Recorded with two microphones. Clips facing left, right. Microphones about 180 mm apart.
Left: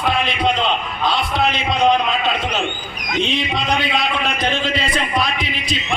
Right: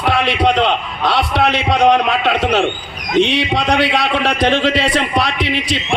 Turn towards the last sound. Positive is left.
turn(degrees=-75)  # may be behind; listen again after turning